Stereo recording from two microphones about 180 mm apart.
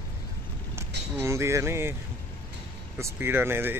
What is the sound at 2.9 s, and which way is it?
Speech, 15° right (ahead or behind).